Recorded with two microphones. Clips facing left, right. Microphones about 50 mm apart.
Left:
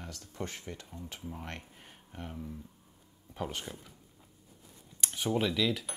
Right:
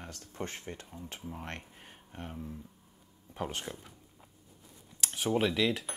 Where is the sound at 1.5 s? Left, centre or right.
Right.